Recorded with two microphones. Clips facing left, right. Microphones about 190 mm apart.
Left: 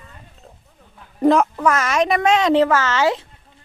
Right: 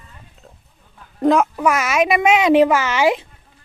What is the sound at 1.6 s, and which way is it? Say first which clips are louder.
A child's voice: right 1 dB; 10° right (ahead or behind).